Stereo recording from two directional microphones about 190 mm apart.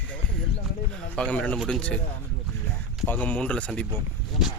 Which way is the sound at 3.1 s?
10° left (ahead or behind).